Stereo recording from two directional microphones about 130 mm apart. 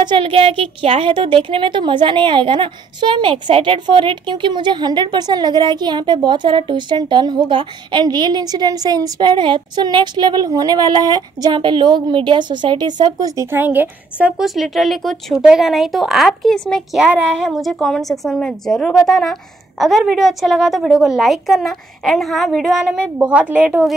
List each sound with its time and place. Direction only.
0.0 s a woman's voice: 40° right (ahead or behind); by 17.0 s 5° left (ahead or behind)
17.0 s a woman's voice: 5° right (ahead or behind)